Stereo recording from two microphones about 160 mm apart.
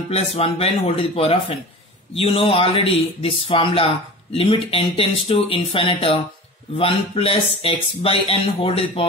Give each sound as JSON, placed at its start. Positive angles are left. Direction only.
{"t": 0.1, "sound": "speech", "side_deg": 35}